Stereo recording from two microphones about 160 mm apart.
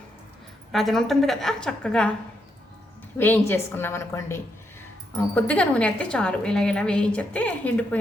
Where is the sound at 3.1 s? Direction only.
15° left (ahead or behind).